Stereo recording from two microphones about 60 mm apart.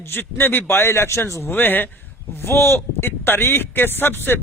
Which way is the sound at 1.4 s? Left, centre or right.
Left.